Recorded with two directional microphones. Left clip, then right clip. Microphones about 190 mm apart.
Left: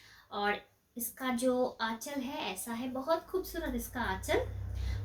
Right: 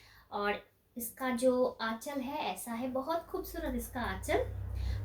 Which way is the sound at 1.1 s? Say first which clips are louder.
Right 2 dB; 10° left (ahead or behind).